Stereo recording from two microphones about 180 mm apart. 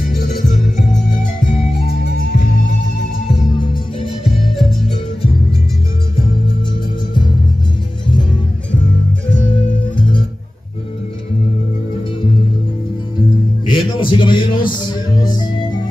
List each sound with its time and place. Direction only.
13.7 s music: 25° left (ahead or behind)